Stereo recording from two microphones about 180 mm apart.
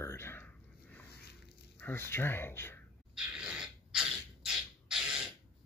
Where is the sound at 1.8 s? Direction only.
10° left (ahead or behind).